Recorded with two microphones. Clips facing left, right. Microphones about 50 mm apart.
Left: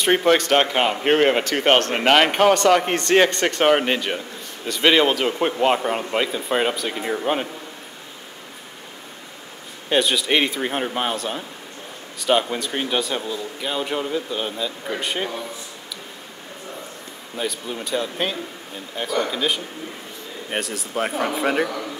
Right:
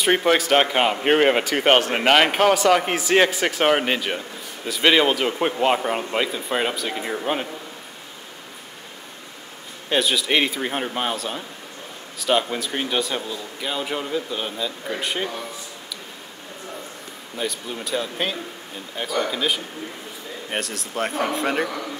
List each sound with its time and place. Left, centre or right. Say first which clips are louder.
0.0 s speech: left 1 dB; centre
9.8 s speech: left 1 dB; centre
17.4 s speech: left 1 dB; centre